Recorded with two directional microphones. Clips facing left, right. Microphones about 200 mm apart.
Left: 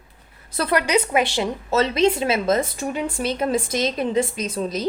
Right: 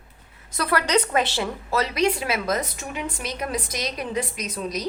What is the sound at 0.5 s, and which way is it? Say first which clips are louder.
Speech: left 3 dB; 25° left (ahead or behind).